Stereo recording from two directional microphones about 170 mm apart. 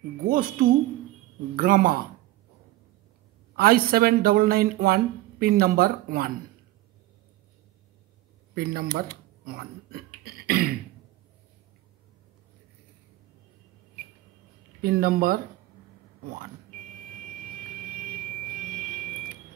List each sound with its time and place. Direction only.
0.3 s speech: 60° right (ahead or behind)
3.5 s speech: 60° right (ahead or behind)
8.5 s speech: 65° right (ahead or behind)
9.8 s throat clearing: 65° right (ahead or behind)
14.8 s speech: 60° right (ahead or behind)